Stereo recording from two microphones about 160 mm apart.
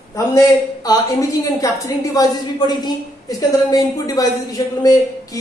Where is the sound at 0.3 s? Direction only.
20° left (ahead or behind).